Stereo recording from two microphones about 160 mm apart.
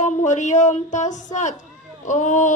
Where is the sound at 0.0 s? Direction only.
50° left (ahead or behind).